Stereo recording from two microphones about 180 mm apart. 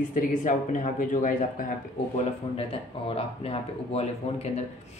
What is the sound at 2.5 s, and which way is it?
Speech, 30° left (ahead or behind).